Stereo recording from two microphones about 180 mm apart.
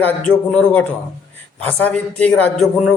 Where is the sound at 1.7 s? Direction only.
10° left (ahead or behind).